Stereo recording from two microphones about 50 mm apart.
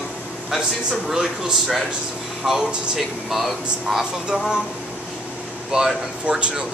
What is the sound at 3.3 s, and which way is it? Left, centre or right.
Speech, centre.